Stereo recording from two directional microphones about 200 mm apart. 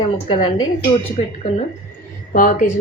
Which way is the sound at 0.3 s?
25° left (ahead or behind).